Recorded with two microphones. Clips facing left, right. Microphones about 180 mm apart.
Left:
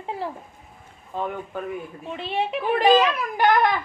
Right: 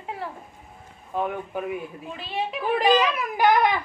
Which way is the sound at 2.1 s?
25° left (ahead or behind).